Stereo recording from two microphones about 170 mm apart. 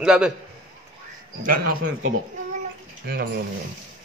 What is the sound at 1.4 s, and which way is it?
Speech, 60° right (ahead or behind).